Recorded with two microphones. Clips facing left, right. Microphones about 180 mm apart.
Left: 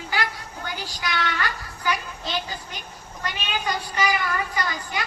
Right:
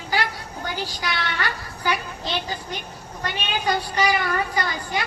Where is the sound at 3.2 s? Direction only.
35° right (ahead or behind).